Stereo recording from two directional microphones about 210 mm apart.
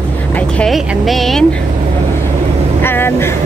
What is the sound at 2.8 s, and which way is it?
Speech, 10° left (ahead or behind).